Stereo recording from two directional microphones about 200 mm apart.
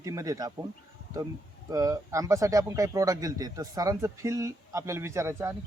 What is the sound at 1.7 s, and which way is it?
Speech, 15° right (ahead or behind).